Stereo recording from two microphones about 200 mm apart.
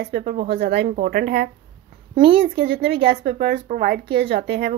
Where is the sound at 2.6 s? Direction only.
50° right (ahead or behind).